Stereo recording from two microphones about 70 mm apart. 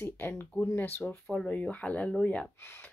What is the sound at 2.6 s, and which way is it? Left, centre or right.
Speech, left.